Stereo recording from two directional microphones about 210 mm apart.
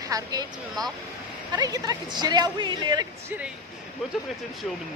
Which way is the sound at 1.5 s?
15° right (ahead or behind).